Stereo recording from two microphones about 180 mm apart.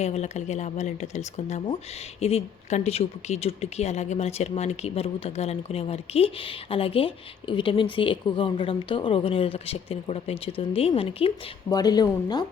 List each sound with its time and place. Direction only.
0.0 s speech: 40° left (ahead or behind); by 12.5 s 20° left (ahead or behind)